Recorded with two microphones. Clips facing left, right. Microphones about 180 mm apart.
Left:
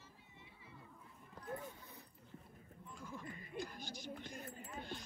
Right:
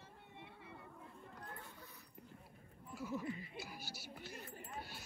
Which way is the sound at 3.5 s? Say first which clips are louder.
Left 4 dB; 5° right (ahead or behind).